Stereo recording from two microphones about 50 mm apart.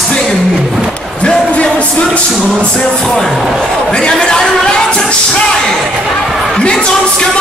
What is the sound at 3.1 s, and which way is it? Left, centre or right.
Speech, centre.